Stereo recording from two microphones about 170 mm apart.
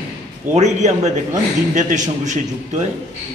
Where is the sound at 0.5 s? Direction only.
40° right (ahead or behind).